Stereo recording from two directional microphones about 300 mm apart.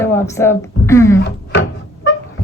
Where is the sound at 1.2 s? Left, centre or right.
Left.